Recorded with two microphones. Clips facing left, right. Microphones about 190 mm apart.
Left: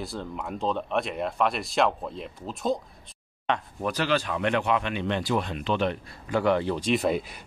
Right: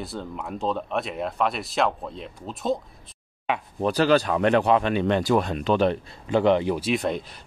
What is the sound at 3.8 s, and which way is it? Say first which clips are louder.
Speech: right 9 dB; 35° right (ahead or behind).